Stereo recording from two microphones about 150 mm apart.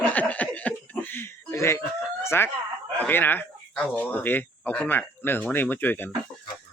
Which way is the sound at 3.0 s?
15° left (ahead or behind).